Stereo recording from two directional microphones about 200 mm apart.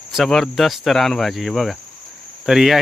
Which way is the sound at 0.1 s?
Centre (ahead or behind).